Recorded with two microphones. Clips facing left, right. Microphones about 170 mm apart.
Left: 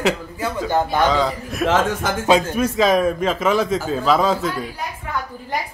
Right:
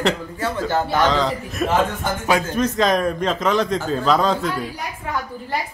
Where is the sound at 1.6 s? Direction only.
90° left.